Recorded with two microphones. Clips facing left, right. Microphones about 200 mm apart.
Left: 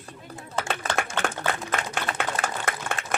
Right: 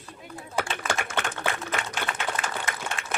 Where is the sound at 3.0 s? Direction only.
40° left (ahead or behind).